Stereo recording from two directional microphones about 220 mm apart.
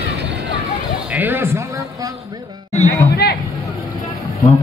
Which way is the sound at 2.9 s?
45° left (ahead or behind).